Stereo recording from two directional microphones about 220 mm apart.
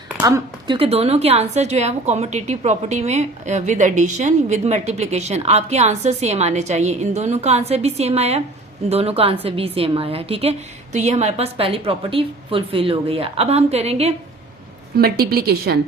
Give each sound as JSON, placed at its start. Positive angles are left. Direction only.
{"t": 0.2, "sound": "a woman's voice", "side_deg": -15}
{"t": 14.9, "sound": "a woman's voice", "side_deg": -45}